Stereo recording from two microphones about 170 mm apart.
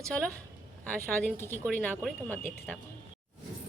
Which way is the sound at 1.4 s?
10° left (ahead or behind).